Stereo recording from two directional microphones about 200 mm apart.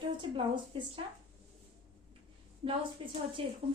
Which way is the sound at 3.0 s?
25° right (ahead or behind).